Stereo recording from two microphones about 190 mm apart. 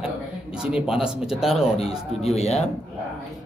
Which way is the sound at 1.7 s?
30° left (ahead or behind).